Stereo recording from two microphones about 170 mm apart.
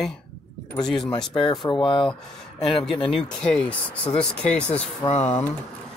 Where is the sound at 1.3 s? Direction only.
25° left (ahead or behind).